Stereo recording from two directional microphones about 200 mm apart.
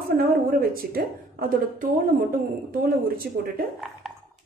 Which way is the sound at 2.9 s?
50° right (ahead or behind).